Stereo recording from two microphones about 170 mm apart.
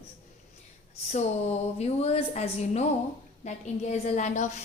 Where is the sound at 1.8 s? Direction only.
40° left (ahead or behind).